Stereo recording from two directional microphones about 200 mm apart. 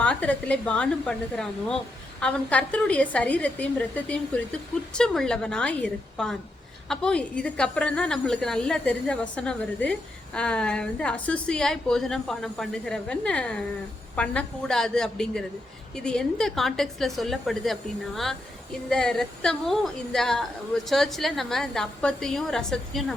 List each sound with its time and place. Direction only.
0.0 s a woman's voice: 5° left (ahead or behind)